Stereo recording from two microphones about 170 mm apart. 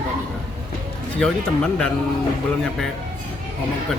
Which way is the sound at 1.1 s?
5° left (ahead or behind).